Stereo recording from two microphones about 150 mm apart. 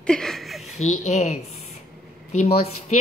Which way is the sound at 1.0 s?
50° left (ahead or behind).